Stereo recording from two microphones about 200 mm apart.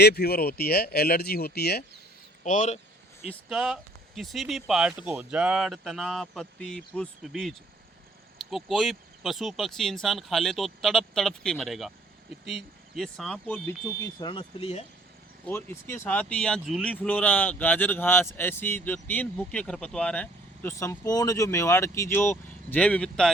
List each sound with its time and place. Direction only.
0.0 s speech: 55° left (ahead or behind)
2.4 s speech: 40° left (ahead or behind)
3.5 s speech: centre (ahead or behind)
13.0 s speech: centre (ahead or behind); by 14.8 s 30° left (ahead or behind)
15.4 s speech: 10° left (ahead or behind)